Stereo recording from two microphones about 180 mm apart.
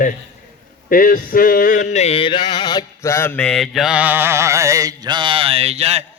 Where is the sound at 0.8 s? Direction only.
50° left (ahead or behind).